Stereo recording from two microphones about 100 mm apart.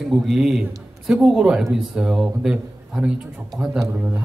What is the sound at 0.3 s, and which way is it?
A man's voice, 5° right (ahead or behind).